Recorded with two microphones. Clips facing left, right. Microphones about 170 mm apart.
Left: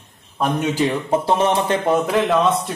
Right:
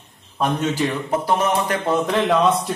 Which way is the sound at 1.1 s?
30° left (ahead or behind).